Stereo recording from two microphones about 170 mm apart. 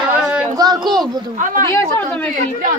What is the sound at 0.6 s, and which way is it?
Speech, 20° right (ahead or behind).